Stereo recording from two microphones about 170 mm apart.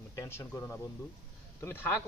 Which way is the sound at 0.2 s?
15° left (ahead or behind).